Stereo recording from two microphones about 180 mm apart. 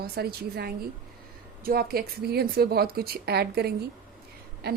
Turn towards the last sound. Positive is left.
turn(degrees=-65)  # may be behind; listen again after turning